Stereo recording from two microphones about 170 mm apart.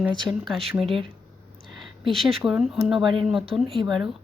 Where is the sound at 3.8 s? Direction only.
20° right (ahead or behind).